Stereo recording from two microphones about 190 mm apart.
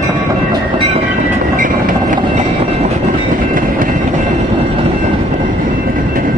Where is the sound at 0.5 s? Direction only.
25° right (ahead or behind).